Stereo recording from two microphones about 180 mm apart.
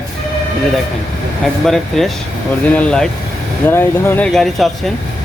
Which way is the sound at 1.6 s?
Centre (ahead or behind).